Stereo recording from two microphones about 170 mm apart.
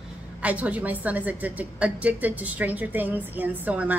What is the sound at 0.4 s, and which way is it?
A woman's voice, 10° right (ahead or behind).